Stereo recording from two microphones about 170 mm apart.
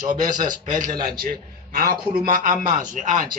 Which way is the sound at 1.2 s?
55° right (ahead or behind).